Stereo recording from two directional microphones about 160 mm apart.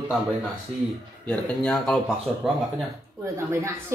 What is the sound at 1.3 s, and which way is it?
Speech, 5° left (ahead or behind).